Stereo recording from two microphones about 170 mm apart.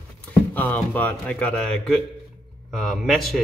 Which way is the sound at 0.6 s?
10° left (ahead or behind).